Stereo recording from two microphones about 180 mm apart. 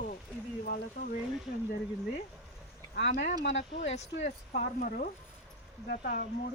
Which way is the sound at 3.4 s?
75° left (ahead or behind).